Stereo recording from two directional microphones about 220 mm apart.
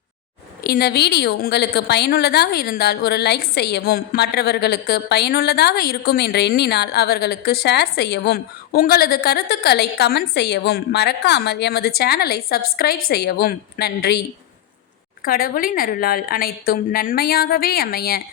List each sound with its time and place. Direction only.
0.6 s a woman's voice: 45° left (ahead or behind)